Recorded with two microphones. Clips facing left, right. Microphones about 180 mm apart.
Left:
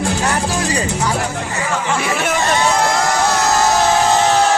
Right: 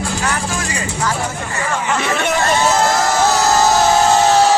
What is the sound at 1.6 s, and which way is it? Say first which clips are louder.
Speech: right 1 dB; 5° left (ahead or behind).